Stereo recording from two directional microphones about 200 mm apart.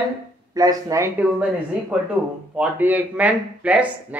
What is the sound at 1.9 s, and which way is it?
Speech, 5° right (ahead or behind).